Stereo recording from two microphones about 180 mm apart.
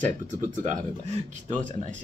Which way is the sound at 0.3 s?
45° right (ahead or behind).